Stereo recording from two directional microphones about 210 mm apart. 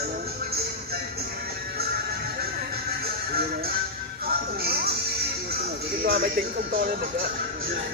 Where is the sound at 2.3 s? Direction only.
45° right (ahead or behind).